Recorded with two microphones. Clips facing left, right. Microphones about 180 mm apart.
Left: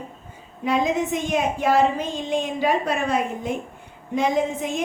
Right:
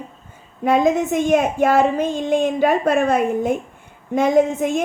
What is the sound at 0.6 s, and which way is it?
A woman's voice, 50° right (ahead or behind).